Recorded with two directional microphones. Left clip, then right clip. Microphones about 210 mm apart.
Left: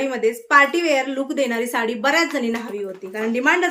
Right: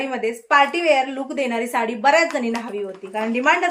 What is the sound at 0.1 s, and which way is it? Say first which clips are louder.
A woman's voice: left 2 dB; 15° left (ahead or behind).